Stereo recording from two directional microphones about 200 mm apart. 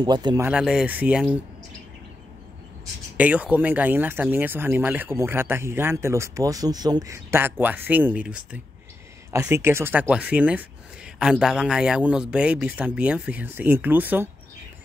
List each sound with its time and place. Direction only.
0.0 s speech: 20° right (ahead or behind)
0.5 s speech: 5° right (ahead or behind)
3.2 s speech: 5° right (ahead or behind)